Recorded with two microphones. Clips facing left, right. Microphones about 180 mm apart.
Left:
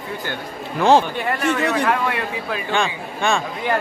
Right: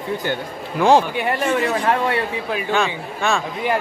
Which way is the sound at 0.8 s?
10° right (ahead or behind).